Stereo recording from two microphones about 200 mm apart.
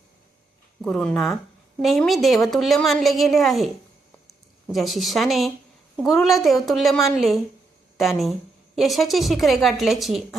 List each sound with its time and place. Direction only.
0.8 s a woman's voice: centre (ahead or behind)
4.7 s a woman's voice: centre (ahead or behind)